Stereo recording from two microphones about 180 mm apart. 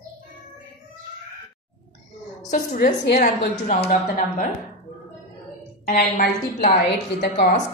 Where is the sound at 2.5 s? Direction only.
45° left (ahead or behind).